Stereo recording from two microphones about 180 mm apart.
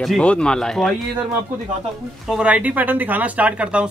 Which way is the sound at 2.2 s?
5° right (ahead or behind).